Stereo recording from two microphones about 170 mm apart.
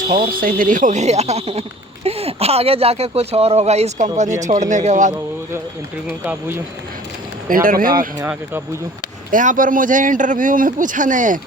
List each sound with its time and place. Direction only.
0.1 s a man's voice: 60° right (ahead or behind)
7.4 s speech: 55° right (ahead or behind)
8.2 s speech: 15° right (ahead or behind)
9.3 s a man's voice: 50° right (ahead or behind)